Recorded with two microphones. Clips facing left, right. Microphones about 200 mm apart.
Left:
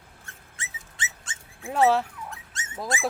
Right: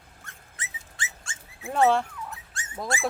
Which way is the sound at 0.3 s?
25° left (ahead or behind).